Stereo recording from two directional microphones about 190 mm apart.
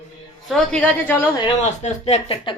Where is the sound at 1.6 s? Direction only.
35° left (ahead or behind).